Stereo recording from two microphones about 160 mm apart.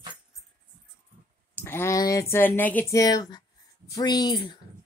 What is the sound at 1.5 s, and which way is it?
Speech, 15° left (ahead or behind).